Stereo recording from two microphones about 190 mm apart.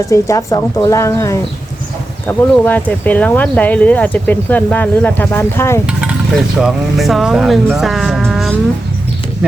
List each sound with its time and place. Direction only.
0.1 s speech: 15° left (ahead or behind)
6.6 s speech: centre (ahead or behind)